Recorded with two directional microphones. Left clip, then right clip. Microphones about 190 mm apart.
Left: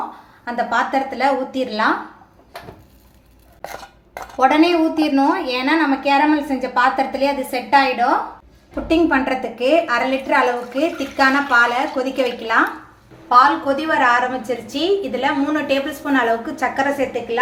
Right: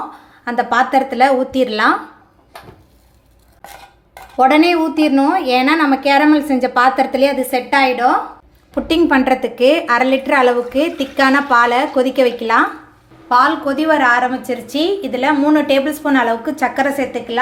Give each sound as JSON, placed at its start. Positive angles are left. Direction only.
{"t": 0.4, "sound": "a woman's voice", "side_deg": -40}
{"t": 4.4, "sound": "a woman's voice", "side_deg": -35}